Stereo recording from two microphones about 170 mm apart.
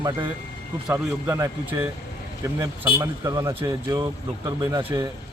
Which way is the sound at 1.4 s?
15° right (ahead or behind).